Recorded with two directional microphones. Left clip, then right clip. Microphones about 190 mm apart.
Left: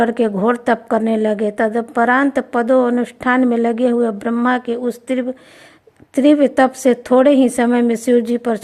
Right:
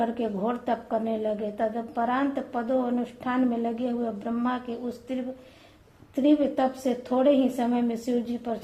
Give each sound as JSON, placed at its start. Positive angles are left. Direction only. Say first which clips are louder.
{"t": 0.0, "sound": "a woman's voice", "louder": "left 12 dB", "side_deg": 45}